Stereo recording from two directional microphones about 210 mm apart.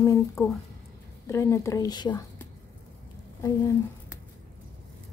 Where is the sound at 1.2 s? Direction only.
15° left (ahead or behind).